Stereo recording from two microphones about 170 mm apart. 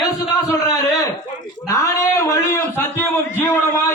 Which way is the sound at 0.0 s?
20° left (ahead or behind).